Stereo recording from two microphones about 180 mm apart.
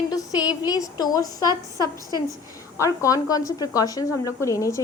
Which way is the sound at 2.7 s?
15° left (ahead or behind).